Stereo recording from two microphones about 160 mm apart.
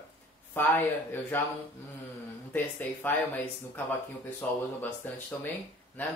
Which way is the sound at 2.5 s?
10° left (ahead or behind).